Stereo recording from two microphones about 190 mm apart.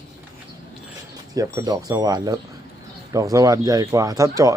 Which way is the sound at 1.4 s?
20° right (ahead or behind).